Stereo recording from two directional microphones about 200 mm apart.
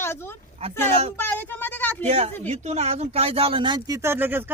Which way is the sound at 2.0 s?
30° right (ahead or behind).